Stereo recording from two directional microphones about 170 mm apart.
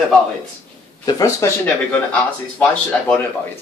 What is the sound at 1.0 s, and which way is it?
Speech, 20° left (ahead or behind).